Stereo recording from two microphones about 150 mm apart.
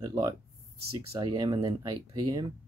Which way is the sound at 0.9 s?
40° right (ahead or behind).